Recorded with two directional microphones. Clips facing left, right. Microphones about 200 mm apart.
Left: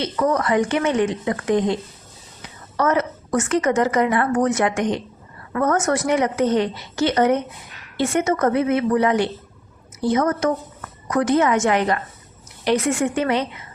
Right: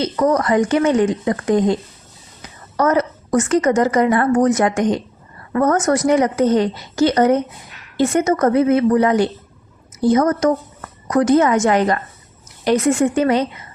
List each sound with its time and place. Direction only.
0.0 s a woman's voice: 40° right (ahead or behind)
2.7 s a woman's voice: 40° right (ahead or behind)